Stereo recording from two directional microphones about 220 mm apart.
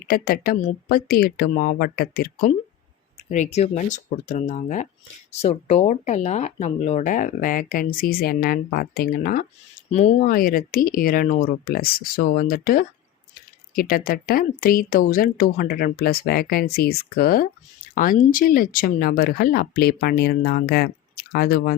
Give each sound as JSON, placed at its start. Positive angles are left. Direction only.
{"t": 0.1, "sound": "speech", "side_deg": 40}
{"t": 3.2, "sound": "speech", "side_deg": 35}